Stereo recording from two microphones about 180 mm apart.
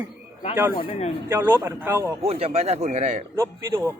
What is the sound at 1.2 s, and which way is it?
Speech, 10° right (ahead or behind).